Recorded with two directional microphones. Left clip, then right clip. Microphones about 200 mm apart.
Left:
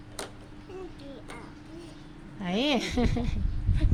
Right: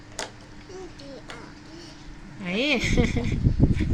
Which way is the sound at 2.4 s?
15° left (ahead or behind).